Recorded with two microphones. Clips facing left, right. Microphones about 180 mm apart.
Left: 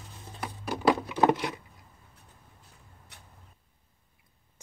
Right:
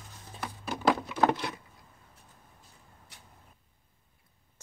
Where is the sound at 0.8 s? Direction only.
10° left (ahead or behind).